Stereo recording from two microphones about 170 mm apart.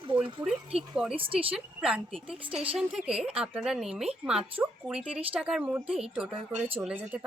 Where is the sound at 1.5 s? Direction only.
5° right (ahead or behind).